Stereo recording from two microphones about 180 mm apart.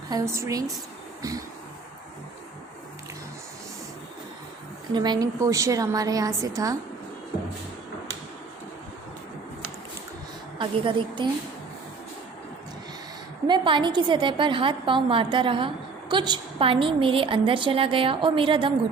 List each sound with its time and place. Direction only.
0.1 s a woman's voice: 15° right (ahead or behind)
4.9 s a woman's voice: 25° right (ahead or behind)
10.6 s a woman's voice: 25° right (ahead or behind)
13.5 s a woman's voice: 25° right (ahead or behind)